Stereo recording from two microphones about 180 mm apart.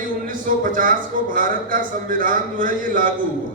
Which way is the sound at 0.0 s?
50° right (ahead or behind).